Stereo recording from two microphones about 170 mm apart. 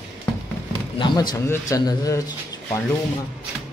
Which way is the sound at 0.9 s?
25° left (ahead or behind).